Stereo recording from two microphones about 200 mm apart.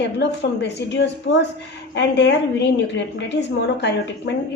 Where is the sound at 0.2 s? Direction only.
60° left (ahead or behind).